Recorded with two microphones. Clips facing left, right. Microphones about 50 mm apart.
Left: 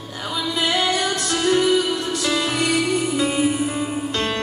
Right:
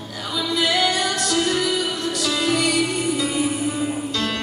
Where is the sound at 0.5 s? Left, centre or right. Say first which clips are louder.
Right 1 dB; left.